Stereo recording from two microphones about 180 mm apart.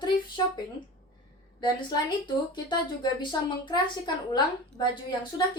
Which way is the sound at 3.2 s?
25° left (ahead or behind).